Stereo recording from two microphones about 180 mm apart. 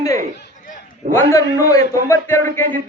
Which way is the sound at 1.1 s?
15° left (ahead or behind).